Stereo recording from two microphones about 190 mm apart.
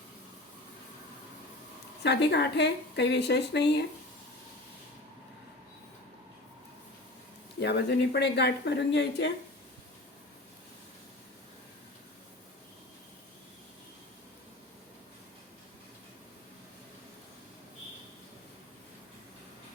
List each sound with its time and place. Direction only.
2.0 s speech: 60° left (ahead or behind)
7.6 s speech: 60° left (ahead or behind)